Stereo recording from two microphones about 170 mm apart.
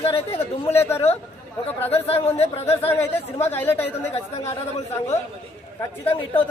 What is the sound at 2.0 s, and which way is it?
Speech, 35° left (ahead or behind).